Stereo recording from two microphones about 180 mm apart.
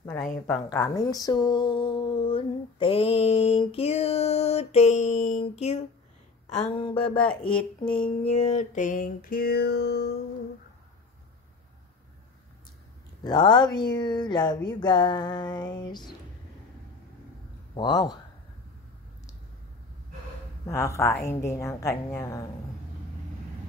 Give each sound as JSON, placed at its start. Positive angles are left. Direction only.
{"t": 0.7, "sound": "a sound", "side_deg": 20}
{"t": 6.7, "sound": "speech", "side_deg": 30}
{"t": 7.2, "sound": "a woman's voice", "side_deg": 5}
{"t": 7.8, "sound": "a sound", "side_deg": 30}
{"t": 13.2, "sound": "speech", "side_deg": 25}
{"t": 17.7, "sound": "speech", "side_deg": 25}
{"t": 20.6, "sound": "a woman's voice", "side_deg": 15}